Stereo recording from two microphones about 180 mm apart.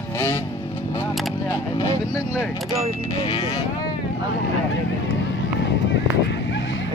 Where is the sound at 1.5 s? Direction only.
20° left (ahead or behind).